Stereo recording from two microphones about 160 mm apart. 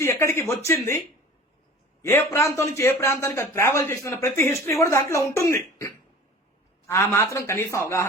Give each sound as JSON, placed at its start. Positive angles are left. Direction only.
{"t": 0.0, "sound": "a man's voice", "side_deg": 15}